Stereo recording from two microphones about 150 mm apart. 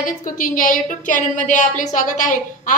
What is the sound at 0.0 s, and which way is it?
A woman's voice, 65° left (ahead or behind).